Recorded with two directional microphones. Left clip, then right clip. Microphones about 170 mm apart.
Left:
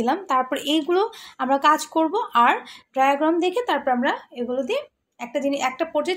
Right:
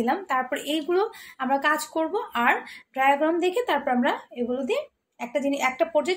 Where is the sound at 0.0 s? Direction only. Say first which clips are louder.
Left 3 dB; 30° left (ahead or behind).